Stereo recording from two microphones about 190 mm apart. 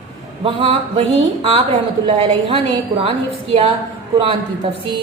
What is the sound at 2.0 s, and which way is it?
A woman's voice, 30° right (ahead or behind).